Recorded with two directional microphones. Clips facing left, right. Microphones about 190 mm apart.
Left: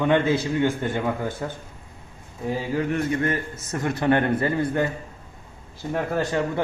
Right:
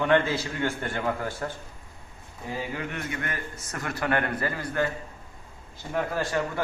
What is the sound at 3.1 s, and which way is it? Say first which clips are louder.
A man's voice: left 9 dB; 30° left (ahead or behind).